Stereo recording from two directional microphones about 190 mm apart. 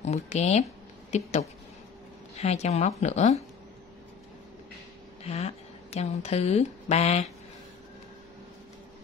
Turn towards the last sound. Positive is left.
turn(degrees=35)  # may be behind; listen again after turning